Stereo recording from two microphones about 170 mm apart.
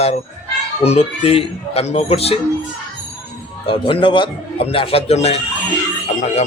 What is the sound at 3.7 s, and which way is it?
A man's voice, 30° left (ahead or behind).